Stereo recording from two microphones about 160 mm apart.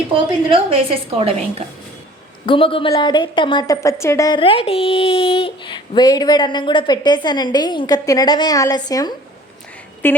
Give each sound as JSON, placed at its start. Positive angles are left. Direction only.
{"t": 0.1, "sound": "a woman's voice", "side_deg": -35}
{"t": 2.5, "sound": "speech", "side_deg": 35}
{"t": 4.4, "sound": "speech", "side_deg": 35}
{"t": 10.0, "sound": "a woman's voice", "side_deg": 15}